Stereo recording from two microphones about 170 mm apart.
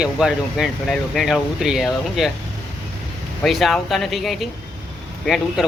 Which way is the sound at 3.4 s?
Centre (ahead or behind).